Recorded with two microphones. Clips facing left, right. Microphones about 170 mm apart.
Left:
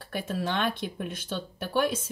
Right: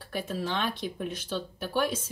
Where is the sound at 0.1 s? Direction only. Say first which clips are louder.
Left 1 dB; 60° left (ahead or behind).